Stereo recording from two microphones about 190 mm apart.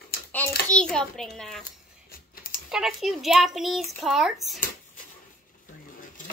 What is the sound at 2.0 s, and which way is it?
Typing, 50° left (ahead or behind).